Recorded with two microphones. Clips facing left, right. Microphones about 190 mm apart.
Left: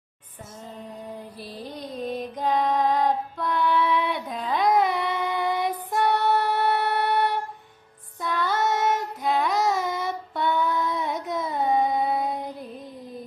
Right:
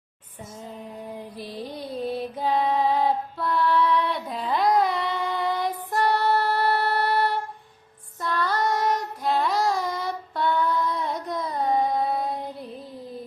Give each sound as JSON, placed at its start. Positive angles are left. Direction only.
{"t": 1.5, "sound": "child singing", "side_deg": -10}
{"t": 9.2, "sound": "music", "side_deg": 0}
{"t": 10.0, "sound": "child singing", "side_deg": 0}
{"t": 11.3, "sound": "carnatic music", "side_deg": 25}
{"t": 11.5, "sound": "child singing", "side_deg": 0}